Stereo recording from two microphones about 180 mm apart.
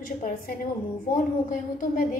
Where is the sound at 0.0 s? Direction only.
50° left (ahead or behind).